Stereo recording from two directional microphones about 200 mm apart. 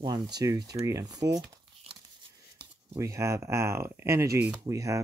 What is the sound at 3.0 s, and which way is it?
Speech, 15° right (ahead or behind).